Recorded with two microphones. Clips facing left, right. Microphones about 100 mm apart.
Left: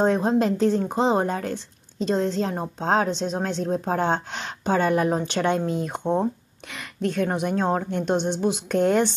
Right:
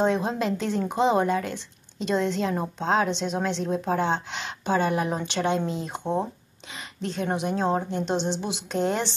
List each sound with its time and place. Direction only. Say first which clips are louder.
0.0 s a woman's voice: left 4 dB; 40° left (ahead or behind)